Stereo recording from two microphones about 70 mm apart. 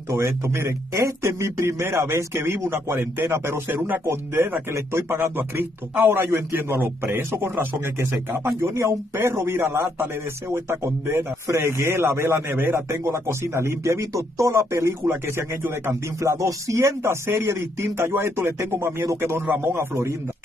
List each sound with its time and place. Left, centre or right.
0.1 s a man's voice: right